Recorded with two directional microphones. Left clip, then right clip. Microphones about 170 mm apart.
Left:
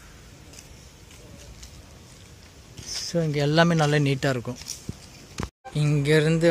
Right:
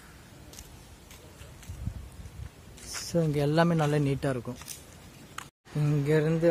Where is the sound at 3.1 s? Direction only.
15° right (ahead or behind); by 4.5 s 5° left (ahead or behind).